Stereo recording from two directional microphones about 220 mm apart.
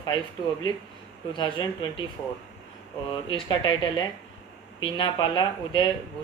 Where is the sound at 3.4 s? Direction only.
20° left (ahead or behind).